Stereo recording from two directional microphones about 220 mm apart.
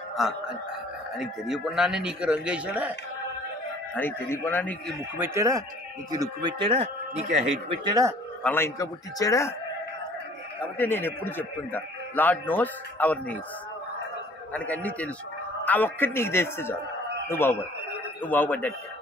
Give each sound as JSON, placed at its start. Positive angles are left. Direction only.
{"t": 0.2, "sound": "a man's voice", "side_deg": 0}
{"t": 3.9, "sound": "a man's voice", "side_deg": 10}
{"t": 5.2, "sound": "speech", "side_deg": -15}
{"t": 7.8, "sound": "speech", "side_deg": -15}
{"t": 8.4, "sound": "a man's voice", "side_deg": 10}
{"t": 10.8, "sound": "a man's voice", "side_deg": 10}
{"t": 14.5, "sound": "a man's voice", "side_deg": 5}